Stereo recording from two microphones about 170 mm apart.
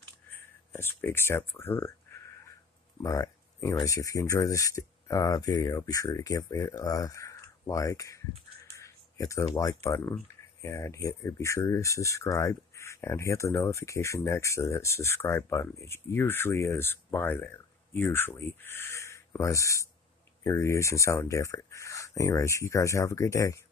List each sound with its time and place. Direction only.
0.3 s speech: 15° left (ahead or behind)
3.0 s speech: 20° left (ahead or behind)
8.7 s a sound: 20° left (ahead or behind)
9.8 s speech: 15° left (ahead or behind)